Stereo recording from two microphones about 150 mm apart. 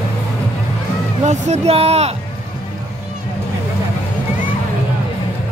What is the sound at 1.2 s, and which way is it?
Speech, 50° right (ahead or behind).